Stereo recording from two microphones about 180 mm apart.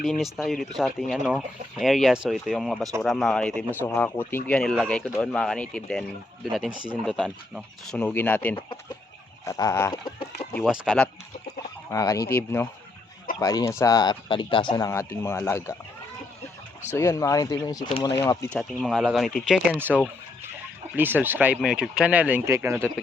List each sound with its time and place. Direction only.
0.0 s speech: centre (ahead or behind); by 10.2 s 25° left (ahead or behind)
10.6 s speech: centre (ahead or behind)
11.9 s speech: 20° left (ahead or behind)
14.8 s speech: 15° left (ahead or behind)
17.0 s speech: 15° left (ahead or behind)
18.2 s speech: 10° left (ahead or behind)
20.9 s speech: 10° right (ahead or behind)